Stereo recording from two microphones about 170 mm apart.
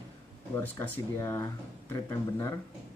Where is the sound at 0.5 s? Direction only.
15° left (ahead or behind).